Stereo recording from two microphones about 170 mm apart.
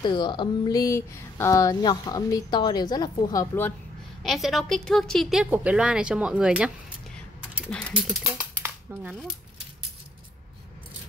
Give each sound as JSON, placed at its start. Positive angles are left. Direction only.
{"t": 0.0, "sound": "speech", "side_deg": 25}
{"t": 4.2, "sound": "a woman's voice", "side_deg": 0}
{"t": 7.9, "sound": "speech", "side_deg": -10}